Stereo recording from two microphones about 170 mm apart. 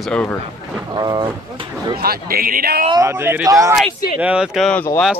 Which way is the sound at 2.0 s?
60° right (ahead or behind).